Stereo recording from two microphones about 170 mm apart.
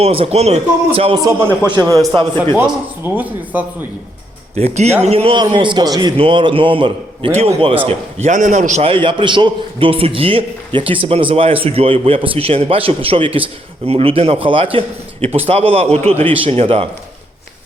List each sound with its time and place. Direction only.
0.0 s a man's voice: 35° right (ahead or behind)
1.7 s a man's voice: 20° right (ahead or behind)
4.5 s a man's voice: 40° right (ahead or behind)
7.9 s a man's voice: 45° right (ahead or behind)